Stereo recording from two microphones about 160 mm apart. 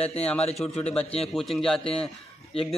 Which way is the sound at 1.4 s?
Centre (ahead or behind).